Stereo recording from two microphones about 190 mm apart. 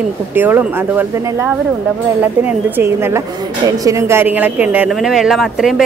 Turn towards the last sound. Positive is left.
turn(degrees=0)  # may be behind; listen again after turning